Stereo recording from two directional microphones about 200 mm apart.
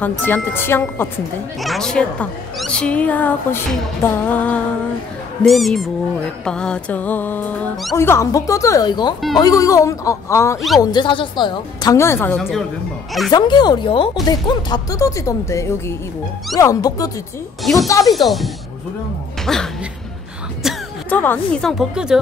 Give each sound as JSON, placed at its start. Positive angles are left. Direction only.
{"t": 0.0, "sound": "a woman's voice", "side_deg": 10}
{"t": 13.3, "sound": "a woman's voice", "side_deg": 20}
{"t": 18.1, "sound": "a woman's voice", "side_deg": 0}
{"t": 20.6, "sound": "a sound", "side_deg": 0}
{"t": 21.1, "sound": "a woman's voice", "side_deg": 10}